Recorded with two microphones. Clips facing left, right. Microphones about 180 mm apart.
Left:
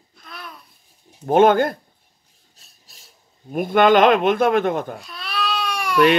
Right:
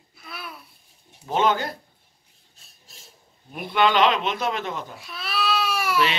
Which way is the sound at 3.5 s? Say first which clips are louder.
Left 7 dB; 45° left (ahead or behind).